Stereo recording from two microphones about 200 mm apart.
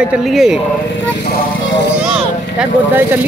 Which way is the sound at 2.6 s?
10° right (ahead or behind).